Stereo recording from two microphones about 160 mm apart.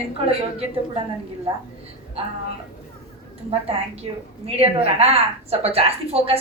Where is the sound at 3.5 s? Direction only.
35° right (ahead or behind).